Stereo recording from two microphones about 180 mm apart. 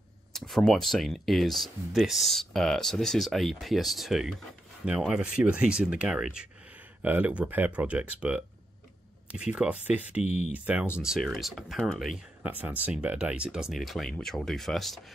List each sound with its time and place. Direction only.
0.3 s speech: centre (ahead or behind)
10.2 s speech: 40° left (ahead or behind)
10.5 s speech: 10° right (ahead or behind)